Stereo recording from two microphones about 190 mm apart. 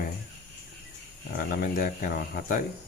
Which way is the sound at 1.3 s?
50° left (ahead or behind).